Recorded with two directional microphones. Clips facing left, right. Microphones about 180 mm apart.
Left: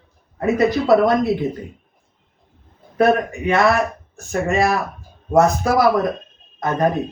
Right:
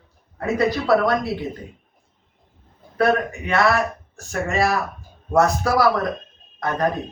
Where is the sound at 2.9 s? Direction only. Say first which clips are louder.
Left 3 dB; 20° left (ahead or behind).